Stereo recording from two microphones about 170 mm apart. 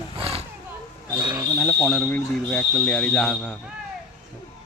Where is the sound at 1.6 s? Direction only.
5° left (ahead or behind).